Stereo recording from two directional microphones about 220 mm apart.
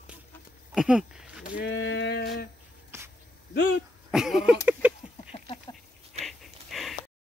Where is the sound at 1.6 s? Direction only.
55° left (ahead or behind).